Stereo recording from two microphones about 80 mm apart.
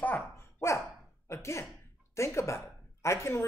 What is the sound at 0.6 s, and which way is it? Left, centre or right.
Dog, left.